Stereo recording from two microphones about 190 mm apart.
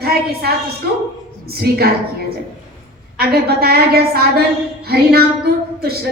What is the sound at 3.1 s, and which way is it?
A woman's voice, 55° right (ahead or behind).